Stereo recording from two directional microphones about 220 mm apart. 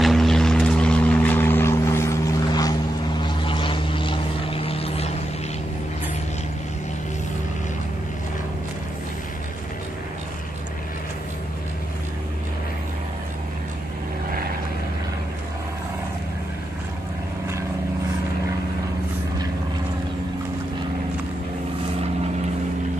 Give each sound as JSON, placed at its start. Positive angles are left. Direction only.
{"t": 0.0, "sound": "vehicle", "side_deg": 0}